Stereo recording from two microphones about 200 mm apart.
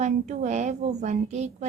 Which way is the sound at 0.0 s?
35° right (ahead or behind).